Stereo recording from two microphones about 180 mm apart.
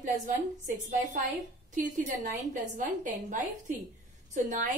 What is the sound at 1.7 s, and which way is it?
A woman's voice, 45° right (ahead or behind).